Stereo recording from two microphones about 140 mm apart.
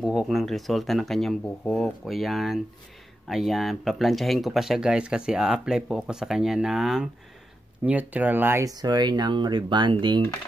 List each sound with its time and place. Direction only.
0.0 s speech: 5° right (ahead or behind); by 10.2 s 35° right (ahead or behind)